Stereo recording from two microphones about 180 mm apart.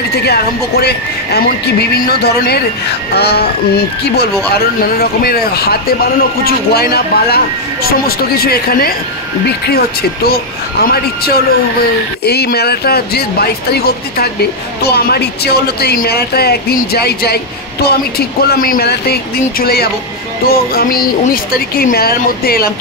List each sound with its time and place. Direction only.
0.3 s speech: 65° left (ahead or behind)